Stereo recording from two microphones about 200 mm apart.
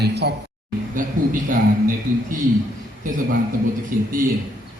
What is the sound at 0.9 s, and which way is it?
Speech, 40° right (ahead or behind).